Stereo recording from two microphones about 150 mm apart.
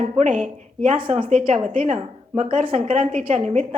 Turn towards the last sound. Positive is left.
turn(degrees=-50)  # may be behind; listen again after turning